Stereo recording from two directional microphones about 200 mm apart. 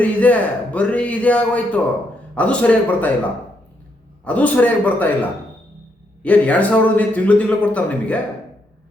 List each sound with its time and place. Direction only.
0.0 s a man's voice: 5° left (ahead or behind)
4.2 s a man's voice: 5° left (ahead or behind)
6.2 s a man's voice: 5° left (ahead or behind)